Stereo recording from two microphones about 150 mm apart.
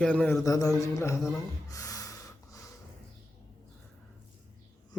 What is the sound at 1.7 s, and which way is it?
Gasp, 25° left (ahead or behind).